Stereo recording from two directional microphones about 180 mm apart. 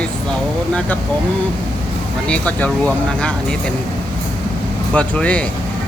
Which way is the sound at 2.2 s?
5° left (ahead or behind).